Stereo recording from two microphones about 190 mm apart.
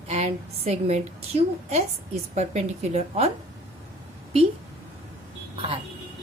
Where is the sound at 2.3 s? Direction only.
35° right (ahead or behind).